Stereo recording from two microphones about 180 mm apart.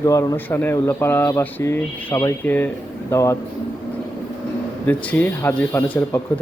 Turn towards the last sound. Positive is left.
turn(degrees=10)  # may be behind; listen again after turning